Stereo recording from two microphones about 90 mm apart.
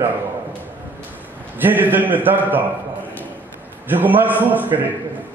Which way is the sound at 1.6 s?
20° right (ahead or behind).